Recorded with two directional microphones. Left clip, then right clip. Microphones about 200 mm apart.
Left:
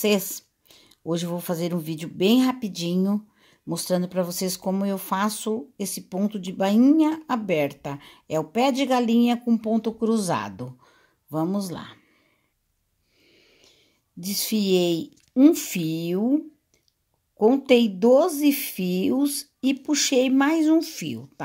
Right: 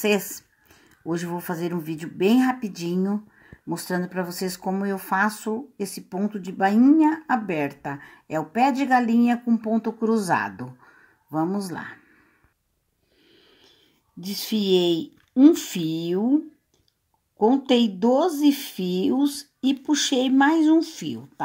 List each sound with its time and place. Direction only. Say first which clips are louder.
0.0 s speech: even; 35° left (ahead or behind)
14.2 s speech: even; 25° left (ahead or behind)
17.4 s speech: left 2 dB; 25° left (ahead or behind)